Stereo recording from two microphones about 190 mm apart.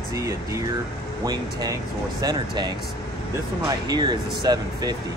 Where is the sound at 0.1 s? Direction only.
15° right (ahead or behind).